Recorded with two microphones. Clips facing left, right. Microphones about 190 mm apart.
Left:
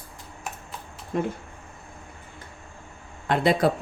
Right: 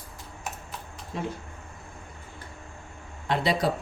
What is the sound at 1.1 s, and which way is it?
Speech, 55° left (ahead or behind).